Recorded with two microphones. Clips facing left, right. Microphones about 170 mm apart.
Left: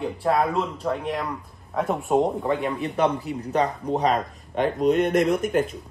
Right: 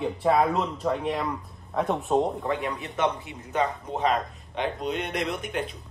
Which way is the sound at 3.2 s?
35° left (ahead or behind).